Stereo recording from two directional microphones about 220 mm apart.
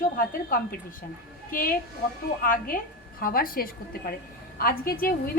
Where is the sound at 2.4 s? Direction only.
40° left (ahead or behind).